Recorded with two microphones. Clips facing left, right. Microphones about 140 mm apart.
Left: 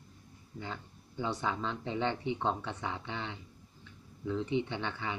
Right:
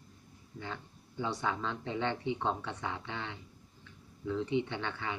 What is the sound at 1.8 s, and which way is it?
Speech, 25° left (ahead or behind).